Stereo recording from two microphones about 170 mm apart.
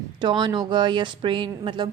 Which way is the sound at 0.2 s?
25° right (ahead or behind).